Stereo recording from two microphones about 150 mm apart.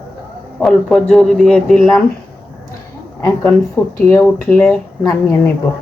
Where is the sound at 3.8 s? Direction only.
Centre (ahead or behind).